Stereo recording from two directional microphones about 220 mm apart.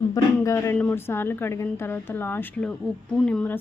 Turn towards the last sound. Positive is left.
turn(degrees=5)  # may be behind; listen again after turning